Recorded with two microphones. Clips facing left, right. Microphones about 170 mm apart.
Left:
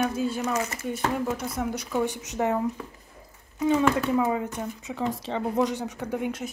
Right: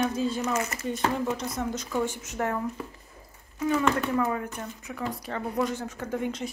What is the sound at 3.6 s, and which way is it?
Speech, 20° left (ahead or behind).